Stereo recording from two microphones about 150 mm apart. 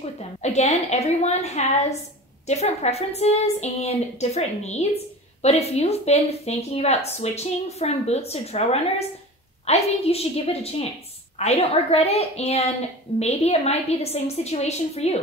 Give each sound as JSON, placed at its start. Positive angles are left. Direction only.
{"t": 0.4, "sound": "speech", "side_deg": 45}